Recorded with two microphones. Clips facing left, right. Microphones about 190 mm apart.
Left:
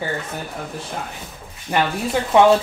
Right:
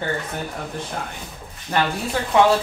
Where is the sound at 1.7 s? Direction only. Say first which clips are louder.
Left 2 dB; 10° left (ahead or behind).